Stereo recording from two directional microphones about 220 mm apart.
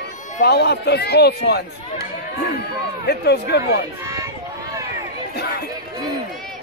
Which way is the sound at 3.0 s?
50° left (ahead or behind).